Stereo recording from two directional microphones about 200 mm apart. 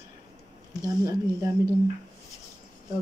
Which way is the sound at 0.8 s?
15° right (ahead or behind).